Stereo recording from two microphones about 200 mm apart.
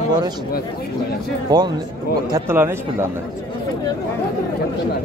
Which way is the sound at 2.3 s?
10° right (ahead or behind).